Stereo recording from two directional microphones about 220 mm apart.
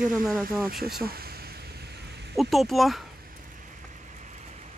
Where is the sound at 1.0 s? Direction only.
45° right (ahead or behind).